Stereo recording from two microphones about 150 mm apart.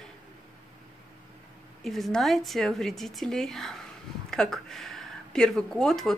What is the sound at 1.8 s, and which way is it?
Speech, centre (ahead or behind).